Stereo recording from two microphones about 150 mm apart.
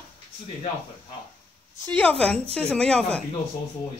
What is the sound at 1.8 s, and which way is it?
Speech, 10° left (ahead or behind).